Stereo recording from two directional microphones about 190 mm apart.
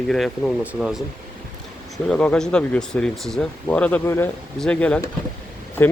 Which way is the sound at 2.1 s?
5° left (ahead or behind).